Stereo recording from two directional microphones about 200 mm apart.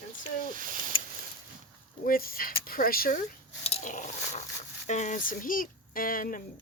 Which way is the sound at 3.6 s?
35° left (ahead or behind).